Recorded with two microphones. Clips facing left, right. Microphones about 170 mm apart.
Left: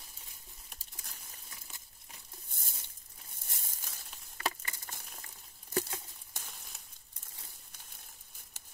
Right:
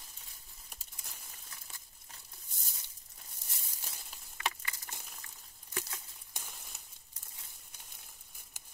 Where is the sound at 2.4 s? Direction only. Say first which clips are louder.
Left 3 dB; 55° left (ahead or behind).